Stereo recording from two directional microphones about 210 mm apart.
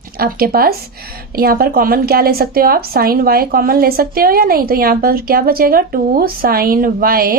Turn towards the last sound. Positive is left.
turn(degrees=-45)  # may be behind; listen again after turning